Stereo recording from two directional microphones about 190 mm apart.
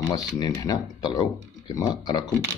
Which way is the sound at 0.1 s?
20° left (ahead or behind).